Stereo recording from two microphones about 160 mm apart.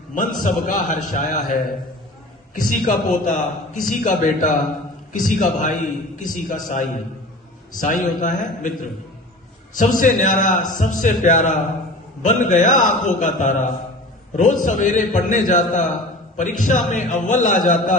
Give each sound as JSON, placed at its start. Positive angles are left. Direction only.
{"t": 0.1, "sound": "a man's voice", "side_deg": 55}